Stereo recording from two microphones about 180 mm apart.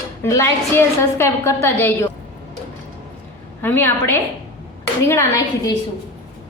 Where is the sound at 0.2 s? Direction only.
15° left (ahead or behind).